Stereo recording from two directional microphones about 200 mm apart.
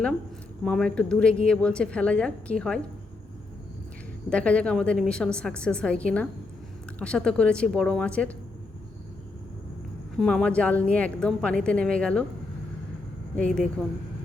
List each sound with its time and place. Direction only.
0.6 s a woman's voice: 5° left (ahead or behind)
4.3 s a woman's voice: 5° left (ahead or behind)
10.2 s a woman's voice: 5° left (ahead or behind)
13.3 s a woman's voice: 5° left (ahead or behind)